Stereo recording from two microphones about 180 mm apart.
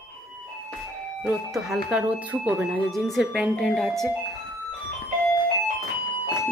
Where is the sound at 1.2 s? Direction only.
Centre (ahead or behind).